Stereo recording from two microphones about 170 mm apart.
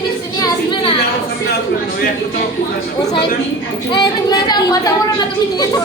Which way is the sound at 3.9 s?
25° left (ahead or behind).